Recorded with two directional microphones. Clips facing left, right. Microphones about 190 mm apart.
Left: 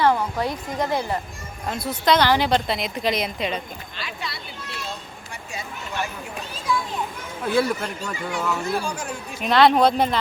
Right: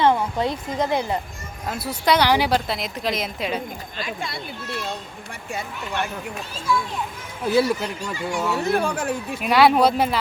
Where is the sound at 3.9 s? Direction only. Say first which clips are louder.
Right 4 dB; 45° right (ahead or behind).